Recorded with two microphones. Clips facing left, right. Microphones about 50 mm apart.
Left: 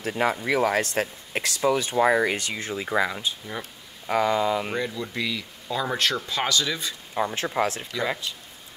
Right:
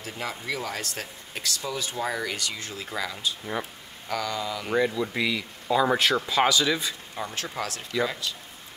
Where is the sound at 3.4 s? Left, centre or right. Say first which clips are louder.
Right 3 dB; centre.